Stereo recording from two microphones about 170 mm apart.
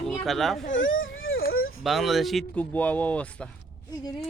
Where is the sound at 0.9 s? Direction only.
65° left (ahead or behind).